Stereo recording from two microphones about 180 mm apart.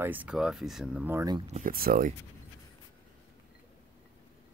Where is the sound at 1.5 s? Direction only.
50° right (ahead or behind).